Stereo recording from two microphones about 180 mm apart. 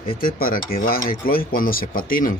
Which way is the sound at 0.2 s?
50° left (ahead or behind).